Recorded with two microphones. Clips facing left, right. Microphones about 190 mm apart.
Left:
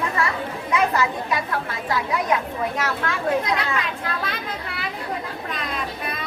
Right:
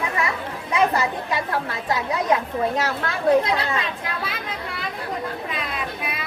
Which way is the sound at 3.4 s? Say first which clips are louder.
Right 1 dB; 30° right (ahead or behind).